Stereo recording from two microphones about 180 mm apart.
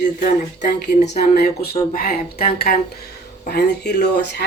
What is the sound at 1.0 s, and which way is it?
Speech, 60° left (ahead or behind).